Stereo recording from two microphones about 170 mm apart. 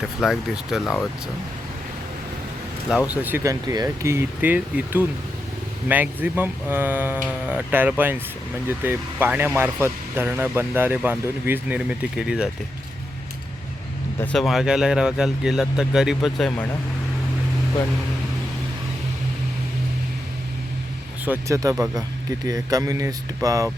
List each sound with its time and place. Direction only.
0.2 s speech: centre (ahead or behind)
2.9 s speech: 5° right (ahead or behind)
14.3 s speech: centre (ahead or behind)
21.2 s speech: 20° right (ahead or behind)